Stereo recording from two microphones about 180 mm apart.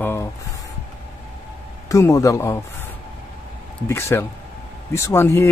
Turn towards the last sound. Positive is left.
turn(degrees=15)  # may be behind; listen again after turning